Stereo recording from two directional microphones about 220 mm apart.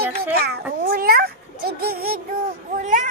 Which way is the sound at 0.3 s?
45° right (ahead or behind).